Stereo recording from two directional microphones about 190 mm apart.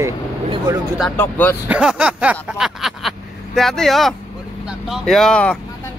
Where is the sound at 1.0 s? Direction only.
10° left (ahead or behind).